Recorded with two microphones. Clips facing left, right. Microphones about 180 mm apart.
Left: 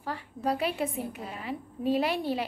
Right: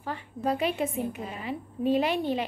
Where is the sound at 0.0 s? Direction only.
5° left (ahead or behind).